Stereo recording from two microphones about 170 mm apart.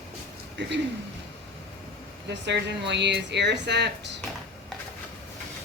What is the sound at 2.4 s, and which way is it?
Speech, 90° right.